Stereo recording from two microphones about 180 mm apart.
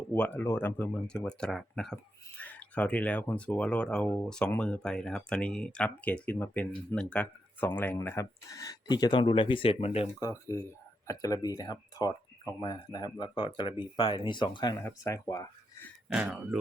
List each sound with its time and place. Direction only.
0.1 s speech: 10° left (ahead or behind); by 10.1 s 35° left (ahead or behind)
10.2 s speech: 15° left (ahead or behind)
16.0 s speech: centre (ahead or behind)